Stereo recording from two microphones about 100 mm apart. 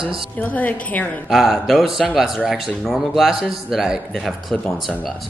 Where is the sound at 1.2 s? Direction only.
Centre (ahead or behind).